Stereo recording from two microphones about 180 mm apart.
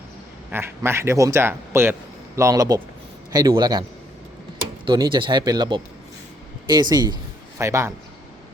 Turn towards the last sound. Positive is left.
turn(degrees=-15)  # may be behind; listen again after turning